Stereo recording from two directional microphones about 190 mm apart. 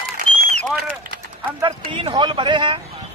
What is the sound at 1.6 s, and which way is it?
Speech, 30° right (ahead or behind).